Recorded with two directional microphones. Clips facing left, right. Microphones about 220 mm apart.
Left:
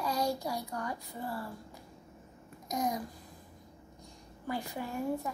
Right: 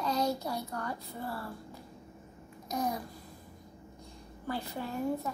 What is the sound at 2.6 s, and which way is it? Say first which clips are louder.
Babbling: even; 15° left (ahead or behind).